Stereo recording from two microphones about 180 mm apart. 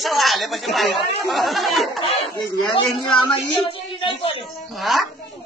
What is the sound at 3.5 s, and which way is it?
Speech, 30° left (ahead or behind).